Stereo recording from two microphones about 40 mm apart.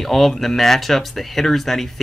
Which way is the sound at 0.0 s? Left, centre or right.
Centre.